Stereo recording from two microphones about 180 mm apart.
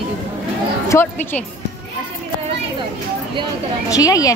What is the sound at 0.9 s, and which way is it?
Speech, 10° left (ahead or behind).